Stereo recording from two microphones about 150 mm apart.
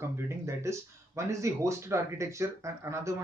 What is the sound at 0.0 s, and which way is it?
Speech, 20° right (ahead or behind).